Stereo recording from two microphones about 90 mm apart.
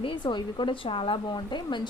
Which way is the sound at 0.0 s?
60° left (ahead or behind).